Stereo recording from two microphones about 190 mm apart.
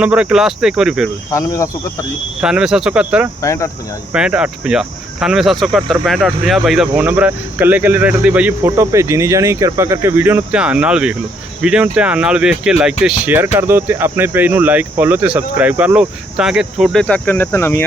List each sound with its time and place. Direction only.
0.0 s speech: 5° right (ahead or behind)
1.3 s speech: 15° left (ahead or behind)
2.4 s speech: 5° right (ahead or behind)
3.4 s speech: 15° left (ahead or behind)
4.1 s cricket: 5° right (ahead or behind); by 17.8 s 10° left (ahead or behind)